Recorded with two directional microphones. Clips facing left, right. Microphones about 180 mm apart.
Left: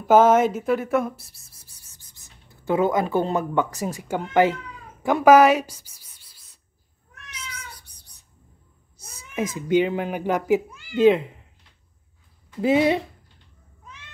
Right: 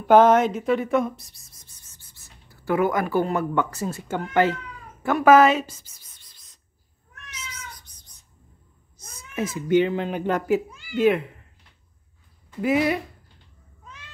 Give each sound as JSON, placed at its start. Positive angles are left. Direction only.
{"t": 0.0, "sound": "speech", "side_deg": 5}
{"t": 5.0, "sound": "a sound", "side_deg": 15}
{"t": 7.2, "sound": "cat", "side_deg": 10}
{"t": 8.9, "sound": "speech", "side_deg": 10}
{"t": 12.6, "sound": "speech", "side_deg": 25}